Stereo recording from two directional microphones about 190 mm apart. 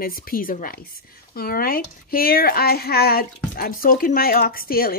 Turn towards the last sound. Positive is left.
turn(degrees=50)  # may be behind; listen again after turning